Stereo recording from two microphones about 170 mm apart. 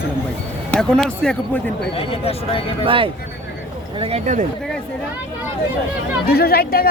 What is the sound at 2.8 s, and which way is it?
Speech, 30° right (ahead or behind).